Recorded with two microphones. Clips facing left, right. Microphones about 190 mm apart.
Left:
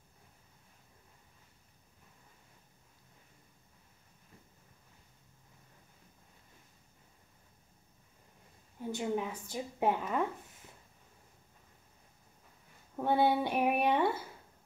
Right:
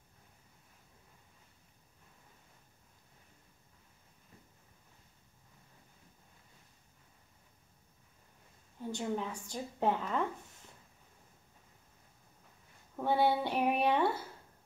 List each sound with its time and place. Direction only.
8.7 s speech: 10° left (ahead or behind)
12.9 s a woman's voice: 15° left (ahead or behind)